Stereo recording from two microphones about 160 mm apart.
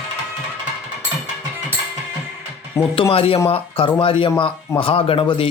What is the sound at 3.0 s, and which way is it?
Speech, 35° left (ahead or behind).